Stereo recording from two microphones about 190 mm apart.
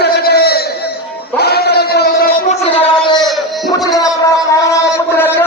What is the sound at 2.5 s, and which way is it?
Music, 30° left (ahead or behind).